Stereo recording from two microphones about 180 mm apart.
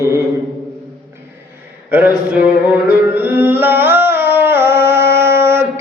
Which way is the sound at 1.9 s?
10° right (ahead or behind).